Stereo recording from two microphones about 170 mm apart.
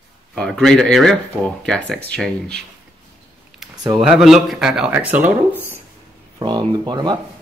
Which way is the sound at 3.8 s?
25° right (ahead or behind).